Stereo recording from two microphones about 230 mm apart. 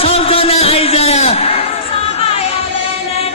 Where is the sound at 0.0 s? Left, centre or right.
Left.